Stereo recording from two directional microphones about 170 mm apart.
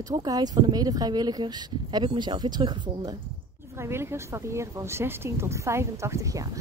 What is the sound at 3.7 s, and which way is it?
Speech, 15° right (ahead or behind).